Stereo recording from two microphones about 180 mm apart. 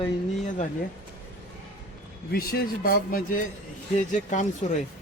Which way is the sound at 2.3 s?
55° left (ahead or behind).